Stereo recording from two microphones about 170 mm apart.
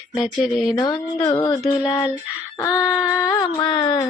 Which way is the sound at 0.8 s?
20° left (ahead or behind).